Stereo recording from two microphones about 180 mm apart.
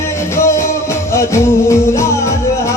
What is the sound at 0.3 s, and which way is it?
Music, 15° left (ahead or behind).